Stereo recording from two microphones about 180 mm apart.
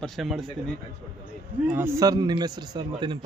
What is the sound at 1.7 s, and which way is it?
A man's voice, 15° right (ahead or behind).